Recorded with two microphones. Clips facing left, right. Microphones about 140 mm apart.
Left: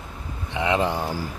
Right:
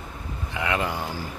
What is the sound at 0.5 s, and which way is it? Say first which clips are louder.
Speech: left 4 dB; 25° left (ahead or behind).